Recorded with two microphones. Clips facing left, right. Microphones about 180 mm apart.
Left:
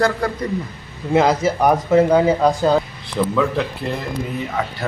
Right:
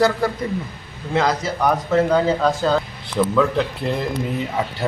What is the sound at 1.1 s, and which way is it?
Speech, 20° left (ahead or behind).